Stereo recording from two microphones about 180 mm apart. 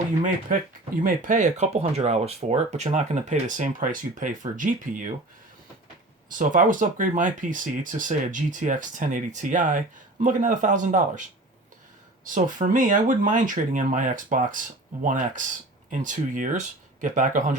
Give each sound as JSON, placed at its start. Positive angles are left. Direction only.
{"t": 0.2, "sound": "speech", "side_deg": -45}
{"t": 6.2, "sound": "speech", "side_deg": -45}
{"t": 15.9, "sound": "speech", "side_deg": -45}